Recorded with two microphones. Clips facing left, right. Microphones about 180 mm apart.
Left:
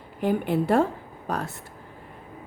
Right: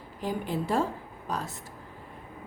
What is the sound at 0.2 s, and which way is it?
A woman's voice, 60° left (ahead or behind).